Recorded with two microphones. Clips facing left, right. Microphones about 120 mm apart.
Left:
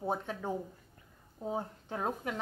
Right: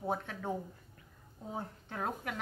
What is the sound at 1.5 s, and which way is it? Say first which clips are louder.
Speech: left 5 dB; 20° left (ahead or behind).